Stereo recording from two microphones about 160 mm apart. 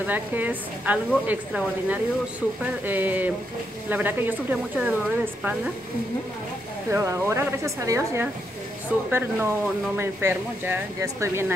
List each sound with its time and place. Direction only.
0.0 s speech: 10° right (ahead or behind)
6.9 s speech: 20° right (ahead or behind)